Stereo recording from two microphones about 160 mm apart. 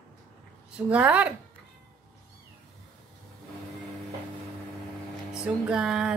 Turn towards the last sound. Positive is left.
turn(degrees=-5)  # may be behind; listen again after turning